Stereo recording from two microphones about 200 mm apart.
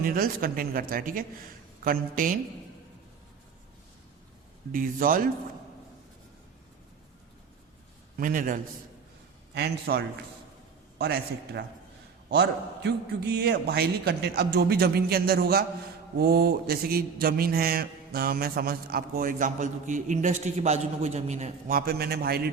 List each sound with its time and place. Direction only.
0.0 s a man's voice: 45° right (ahead or behind)
4.7 s a man's voice: 45° right (ahead or behind)
8.2 s a man's voice: 45° right (ahead or behind)